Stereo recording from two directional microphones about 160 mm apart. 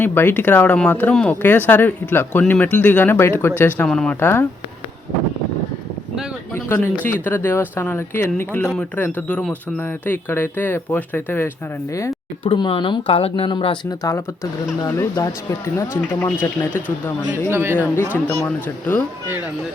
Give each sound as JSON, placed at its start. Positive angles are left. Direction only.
{"t": 0.0, "sound": "speech", "side_deg": 15}
{"t": 6.5, "sound": "speech", "side_deg": 15}
{"t": 12.5, "sound": "speech", "side_deg": 30}
{"t": 14.8, "sound": "speech", "side_deg": 20}
{"t": 17.5, "sound": "speech", "side_deg": -15}
{"t": 17.7, "sound": "speech", "side_deg": 15}